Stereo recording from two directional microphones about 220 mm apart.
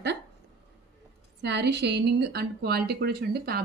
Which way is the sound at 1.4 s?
50° right (ahead or behind).